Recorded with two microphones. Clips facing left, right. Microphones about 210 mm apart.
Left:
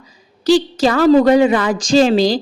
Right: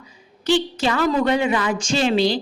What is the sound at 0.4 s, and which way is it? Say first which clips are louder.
A woman's voice: left 7 dB; 40° left (ahead or behind).